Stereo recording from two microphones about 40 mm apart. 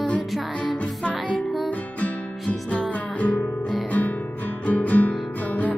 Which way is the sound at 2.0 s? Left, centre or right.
Left.